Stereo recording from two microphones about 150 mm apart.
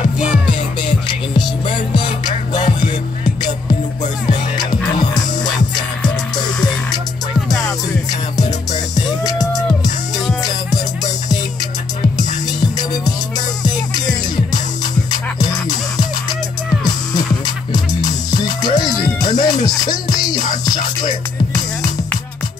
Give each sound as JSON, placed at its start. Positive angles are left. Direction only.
{"t": 0.5, "sound": "music", "side_deg": 30}
{"t": 8.9, "sound": "music", "side_deg": 25}
{"t": 12.7, "sound": "music", "side_deg": 25}
{"t": 16.8, "sound": "music", "side_deg": 25}